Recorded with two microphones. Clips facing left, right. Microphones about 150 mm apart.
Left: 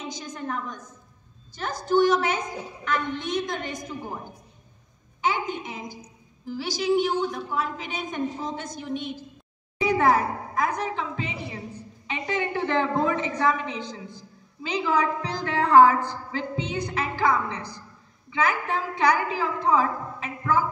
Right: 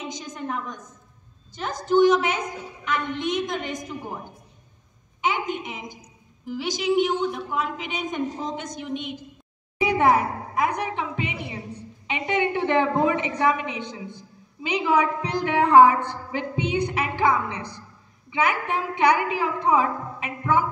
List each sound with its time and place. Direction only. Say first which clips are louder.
0.1 s a woman's voice: right 1 dB; 20° right (ahead or behind)
5.2 s a woman's voice: right 1 dB; 20° right (ahead or behind)
9.8 s a sound: right 1 dB; 15° right (ahead or behind)
12.1 s a woman's voice: right 4 dB; 20° right (ahead or behind)
16.6 s a woman's voice: right 6 dB; 60° right (ahead or behind)
16.9 s a woman's voice: left 3 dB; 15° right (ahead or behind)
17.6 s a woman's voice: right 2 dB; 60° right (ahead or behind)
18.3 s a woman's voice: right 1 dB; 15° right (ahead or behind)